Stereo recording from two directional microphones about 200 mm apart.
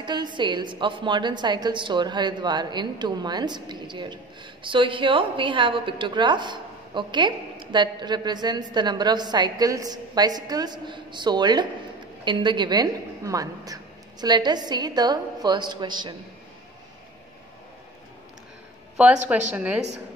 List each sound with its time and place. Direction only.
0.0 s a woman's voice: 20° right (ahead or behind)
19.5 s a woman's voice: 5° right (ahead or behind)